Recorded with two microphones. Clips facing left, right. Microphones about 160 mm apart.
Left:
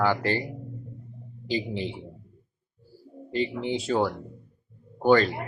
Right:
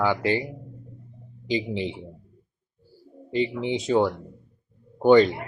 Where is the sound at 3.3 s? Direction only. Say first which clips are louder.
Right 2 dB; 20° right (ahead or behind).